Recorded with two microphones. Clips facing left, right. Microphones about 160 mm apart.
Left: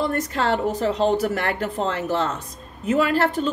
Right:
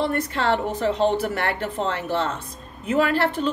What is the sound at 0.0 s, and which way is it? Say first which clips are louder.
Speech: even; 40° left (ahead or behind).